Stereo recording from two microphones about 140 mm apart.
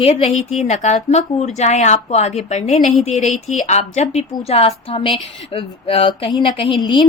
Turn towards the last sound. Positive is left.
turn(degrees=35)  # may be behind; listen again after turning